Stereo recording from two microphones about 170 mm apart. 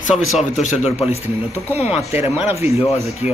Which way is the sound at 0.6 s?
40° left (ahead or behind).